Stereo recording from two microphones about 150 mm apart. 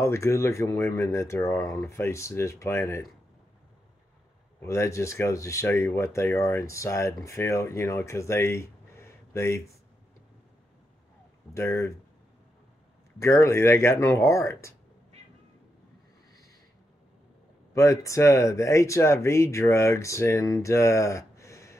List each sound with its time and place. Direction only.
0.0 s speech: 20° left (ahead or behind)
4.6 s speech: 20° left (ahead or behind)
11.5 s speech: 20° left (ahead or behind)
13.2 s speech: 20° left (ahead or behind)
17.7 s speech: 20° left (ahead or behind)